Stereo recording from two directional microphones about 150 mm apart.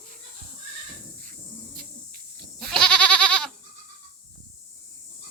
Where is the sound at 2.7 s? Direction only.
5° left (ahead or behind).